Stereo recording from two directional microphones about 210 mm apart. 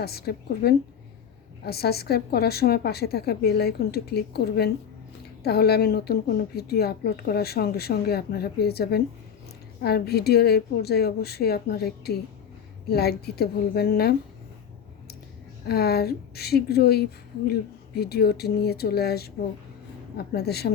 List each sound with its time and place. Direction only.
0.0 s a woman's voice: 50° left (ahead or behind)
15.6 s a woman's voice: 50° left (ahead or behind)